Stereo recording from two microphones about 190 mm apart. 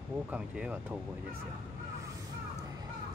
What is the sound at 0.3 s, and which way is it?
Speech, 5° right (ahead or behind).